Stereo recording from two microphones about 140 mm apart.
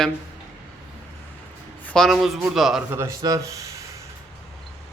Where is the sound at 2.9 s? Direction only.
20° right (ahead or behind).